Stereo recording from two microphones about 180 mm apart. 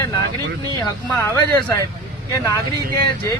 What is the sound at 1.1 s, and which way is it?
A man's voice, 15° left (ahead or behind).